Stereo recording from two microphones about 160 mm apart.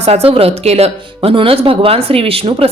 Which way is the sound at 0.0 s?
40° right (ahead or behind).